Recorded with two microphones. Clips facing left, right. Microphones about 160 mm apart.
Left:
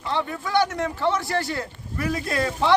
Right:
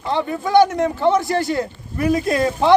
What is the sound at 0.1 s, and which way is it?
Speech, 20° right (ahead or behind).